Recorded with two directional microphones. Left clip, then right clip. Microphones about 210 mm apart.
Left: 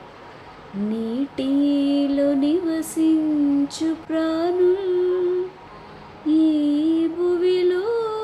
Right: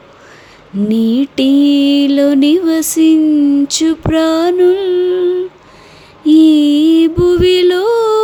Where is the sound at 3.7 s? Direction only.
50° right (ahead or behind).